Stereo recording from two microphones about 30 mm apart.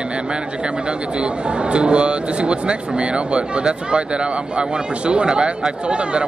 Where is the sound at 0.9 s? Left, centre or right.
Right.